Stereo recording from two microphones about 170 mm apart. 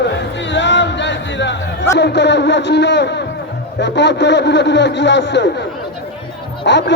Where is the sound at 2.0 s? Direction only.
90° left.